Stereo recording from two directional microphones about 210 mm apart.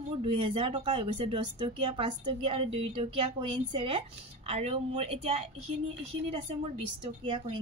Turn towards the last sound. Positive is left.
turn(degrees=-25)  # may be behind; listen again after turning